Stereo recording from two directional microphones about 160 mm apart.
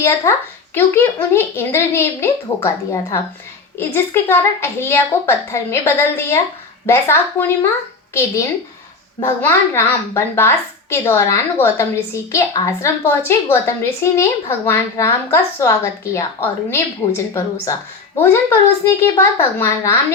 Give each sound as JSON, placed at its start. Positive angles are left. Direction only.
{"t": 0.0, "sound": "a woman's voice", "side_deg": 15}
{"t": 9.2, "sound": "a woman's voice", "side_deg": 15}
{"t": 18.2, "sound": "a woman's voice", "side_deg": 15}